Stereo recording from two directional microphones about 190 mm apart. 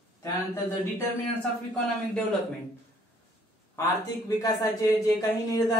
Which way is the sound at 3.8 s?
15° left (ahead or behind).